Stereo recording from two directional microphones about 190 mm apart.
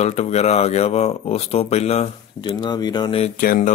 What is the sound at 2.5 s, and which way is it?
Speech, 20° left (ahead or behind).